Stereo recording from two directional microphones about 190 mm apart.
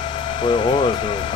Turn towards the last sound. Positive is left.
turn(degrees=25)  # may be behind; listen again after turning